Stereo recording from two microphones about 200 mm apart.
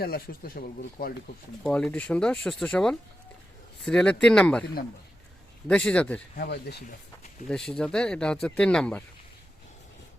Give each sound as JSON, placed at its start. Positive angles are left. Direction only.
{"t": 0.0, "sound": "speech", "side_deg": 50}
{"t": 1.6, "sound": "speech", "side_deg": 5}
{"t": 5.6, "sound": "speech", "side_deg": 5}
{"t": 6.3, "sound": "speech", "side_deg": 50}
{"t": 7.4, "sound": "speech", "side_deg": 5}